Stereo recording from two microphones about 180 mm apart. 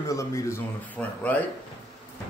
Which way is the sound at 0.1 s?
15° left (ahead or behind).